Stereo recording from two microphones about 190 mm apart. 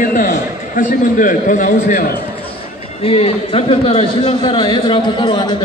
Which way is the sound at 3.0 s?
30° left (ahead or behind).